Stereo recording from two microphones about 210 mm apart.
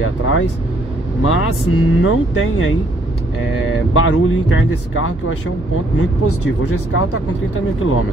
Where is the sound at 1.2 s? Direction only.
85° left.